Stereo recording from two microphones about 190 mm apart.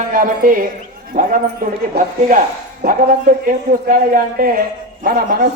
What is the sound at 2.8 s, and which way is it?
A man's voice, 45° right (ahead or behind).